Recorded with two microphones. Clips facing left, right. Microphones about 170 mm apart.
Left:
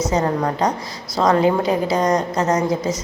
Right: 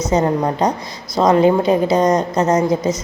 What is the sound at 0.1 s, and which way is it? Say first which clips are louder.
A woman's voice: right 3 dB; 20° right (ahead or behind).